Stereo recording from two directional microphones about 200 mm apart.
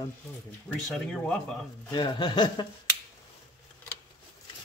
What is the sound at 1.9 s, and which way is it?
Speech, 20° left (ahead or behind).